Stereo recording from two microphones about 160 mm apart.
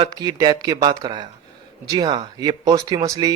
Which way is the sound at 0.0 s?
25° right (ahead or behind).